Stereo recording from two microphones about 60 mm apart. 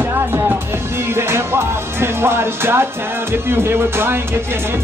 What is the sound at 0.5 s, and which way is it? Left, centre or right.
Music, right.